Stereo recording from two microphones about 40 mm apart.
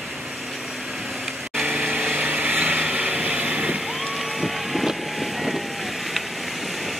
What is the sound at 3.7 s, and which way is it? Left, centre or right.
Vehicle, centre.